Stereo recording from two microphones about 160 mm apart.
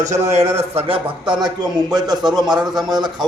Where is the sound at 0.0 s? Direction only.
45° right (ahead or behind); by 2.1 s 25° right (ahead or behind).